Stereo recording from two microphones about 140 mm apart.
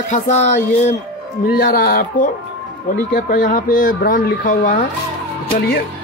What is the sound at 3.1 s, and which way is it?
Speech, 75° left (ahead or behind).